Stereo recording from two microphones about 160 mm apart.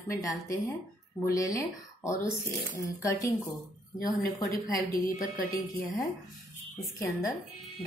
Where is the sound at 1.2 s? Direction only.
20° left (ahead or behind).